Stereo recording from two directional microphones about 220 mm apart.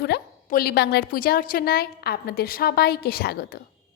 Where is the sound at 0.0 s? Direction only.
45° left (ahead or behind).